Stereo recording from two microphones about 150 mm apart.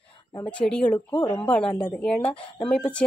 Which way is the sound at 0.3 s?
25° left (ahead or behind).